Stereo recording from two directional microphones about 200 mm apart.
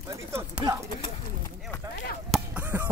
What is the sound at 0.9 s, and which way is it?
Speech, 20° left (ahead or behind).